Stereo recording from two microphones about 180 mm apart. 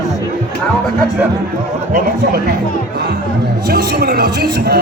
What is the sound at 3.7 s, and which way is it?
Speech, 65° right (ahead or behind).